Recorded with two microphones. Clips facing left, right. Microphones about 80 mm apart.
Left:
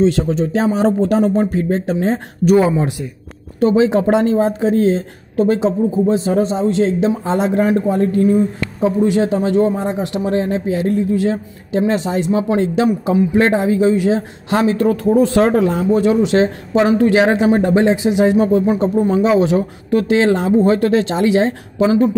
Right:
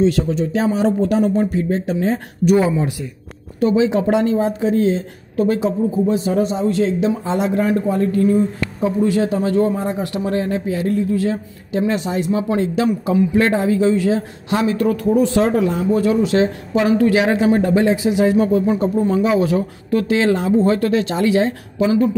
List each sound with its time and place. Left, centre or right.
0.0 s speech: left
14.5 s speech: left
15.2 s speech: left
15.9 s speech: left